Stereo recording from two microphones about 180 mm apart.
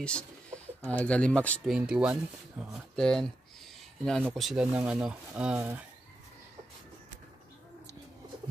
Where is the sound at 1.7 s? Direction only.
5° right (ahead or behind).